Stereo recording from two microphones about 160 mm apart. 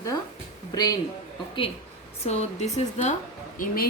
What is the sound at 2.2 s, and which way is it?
Speech, 45° left (ahead or behind).